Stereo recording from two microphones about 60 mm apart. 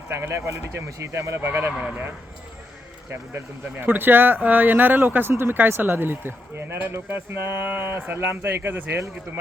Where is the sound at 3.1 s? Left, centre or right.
Right.